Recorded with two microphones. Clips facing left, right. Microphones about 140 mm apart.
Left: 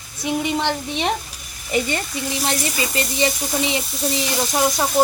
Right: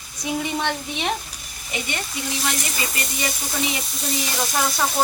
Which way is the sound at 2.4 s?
30° left (ahead or behind).